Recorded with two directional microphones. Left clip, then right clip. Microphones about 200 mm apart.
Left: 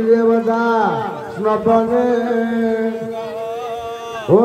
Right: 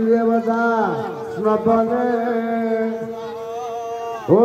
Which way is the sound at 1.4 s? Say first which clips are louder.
Left 2 dB; 50° right (ahead or behind).